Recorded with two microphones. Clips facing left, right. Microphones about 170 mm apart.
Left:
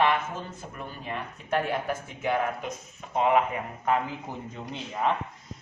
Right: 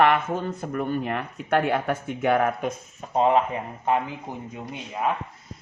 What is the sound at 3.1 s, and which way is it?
Speech, 35° right (ahead or behind).